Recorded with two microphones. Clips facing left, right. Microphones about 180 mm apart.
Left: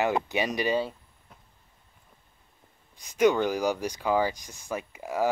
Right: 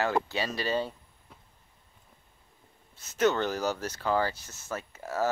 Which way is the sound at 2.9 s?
15° left (ahead or behind).